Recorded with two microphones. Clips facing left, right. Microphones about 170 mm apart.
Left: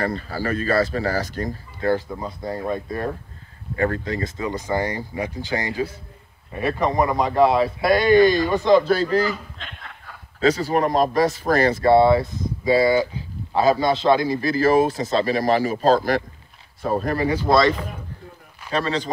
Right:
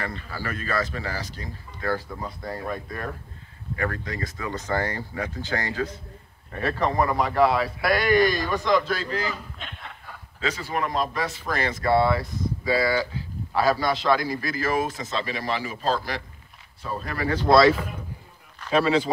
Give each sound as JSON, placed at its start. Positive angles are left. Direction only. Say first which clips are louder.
{"t": 0.0, "sound": "speech", "louder": "left 8 dB", "side_deg": 35}
{"t": 1.8, "sound": "speech", "louder": "left 6 dB", "side_deg": 25}
{"t": 10.4, "sound": "speech", "louder": "left 9 dB", "side_deg": 40}
{"t": 11.8, "sound": "speech", "louder": "left 5 dB", "side_deg": 25}
{"t": 17.3, "sound": "speech", "louder": "right 2 dB", "side_deg": 0}